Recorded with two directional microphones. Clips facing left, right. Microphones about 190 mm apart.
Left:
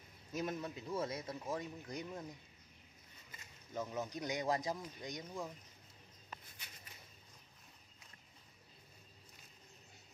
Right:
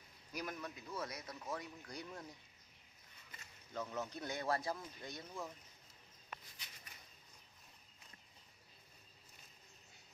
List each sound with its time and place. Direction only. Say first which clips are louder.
0.3 s speech: left 5 dB; 25° left (ahead or behind)
3.3 s speech: left 2 dB; 15° left (ahead or behind)